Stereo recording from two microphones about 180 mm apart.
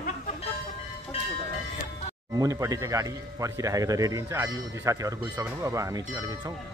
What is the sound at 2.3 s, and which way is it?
Speech, 20° right (ahead or behind).